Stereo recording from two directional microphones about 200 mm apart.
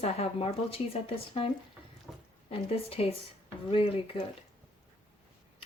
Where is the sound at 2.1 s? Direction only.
Centre (ahead or behind).